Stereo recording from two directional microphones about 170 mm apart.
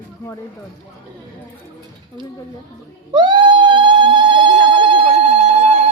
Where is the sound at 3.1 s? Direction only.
25° right (ahead or behind).